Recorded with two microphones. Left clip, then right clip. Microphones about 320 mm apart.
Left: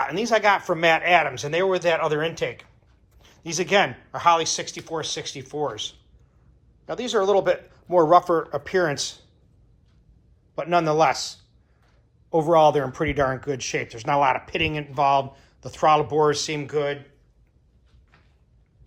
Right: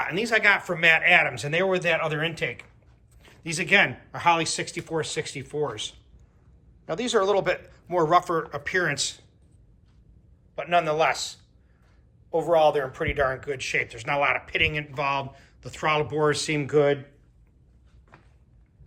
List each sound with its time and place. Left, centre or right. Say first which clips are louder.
0.0 s a man's voice: left 2 dB; centre
10.5 s speech: left 2 dB; centre
12.5 s speech: left 3 dB; centre